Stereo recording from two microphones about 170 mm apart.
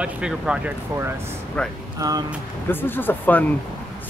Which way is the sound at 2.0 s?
20° right (ahead or behind).